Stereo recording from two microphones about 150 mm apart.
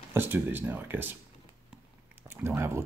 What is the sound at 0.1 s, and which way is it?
Speech, 15° right (ahead or behind).